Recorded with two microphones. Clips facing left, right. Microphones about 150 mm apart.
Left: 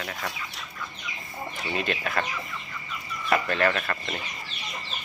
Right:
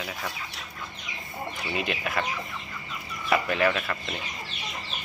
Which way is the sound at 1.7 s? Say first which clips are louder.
Left 1 dB; 5° right (ahead or behind).